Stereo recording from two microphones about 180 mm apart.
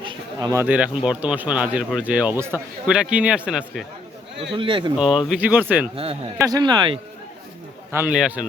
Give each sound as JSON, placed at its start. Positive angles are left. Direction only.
{"t": 0.0, "sound": "speech", "side_deg": -25}
{"t": 4.5, "sound": "speech", "side_deg": -30}
{"t": 4.9, "sound": "speech", "side_deg": -5}
{"t": 6.4, "sound": "speech", "side_deg": -20}
{"t": 7.9, "sound": "speech", "side_deg": -5}